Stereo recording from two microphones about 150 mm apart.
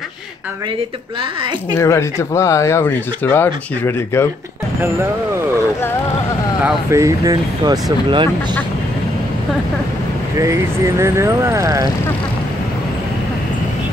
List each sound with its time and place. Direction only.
1.8 s speech: 20° left (ahead or behind)
6.6 s speech: 20° right (ahead or behind)
10.3 s speech: 20° right (ahead or behind)